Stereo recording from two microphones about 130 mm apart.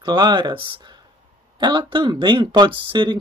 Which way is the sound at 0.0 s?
35° right (ahead or behind).